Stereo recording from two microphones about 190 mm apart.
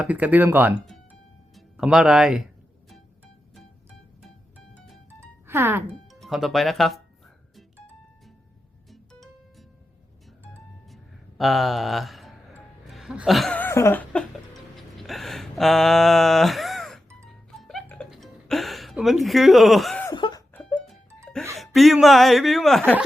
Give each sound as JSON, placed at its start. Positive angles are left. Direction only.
{"t": 0.0, "sound": "speech", "side_deg": -10}
{"t": 5.5, "sound": "speech", "side_deg": -10}
{"t": 6.1, "sound": "speech", "side_deg": 0}
{"t": 8.9, "sound": "music", "side_deg": 0}
{"t": 10.9, "sound": "a sound", "side_deg": 0}
{"t": 17.6, "sound": "music", "side_deg": 0}
{"t": 20.1, "sound": "a sound", "side_deg": 20}
{"t": 20.5, "sound": "music", "side_deg": 5}
{"t": 21.6, "sound": "speech", "side_deg": 0}